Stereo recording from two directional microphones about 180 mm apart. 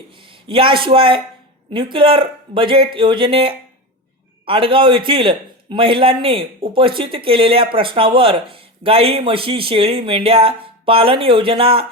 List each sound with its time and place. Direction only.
0.4 s a man's voice: 30° right (ahead or behind)